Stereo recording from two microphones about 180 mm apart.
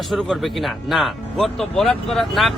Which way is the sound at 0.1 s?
Centre (ahead or behind).